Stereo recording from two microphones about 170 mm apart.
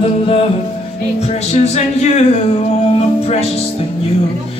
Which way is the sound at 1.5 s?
40° left (ahead or behind).